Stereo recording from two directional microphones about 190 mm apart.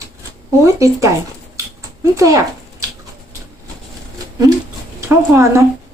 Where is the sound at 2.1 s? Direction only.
15° right (ahead or behind).